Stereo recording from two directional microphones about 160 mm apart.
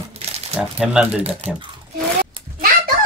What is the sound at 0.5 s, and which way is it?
Speech, 5° right (ahead or behind).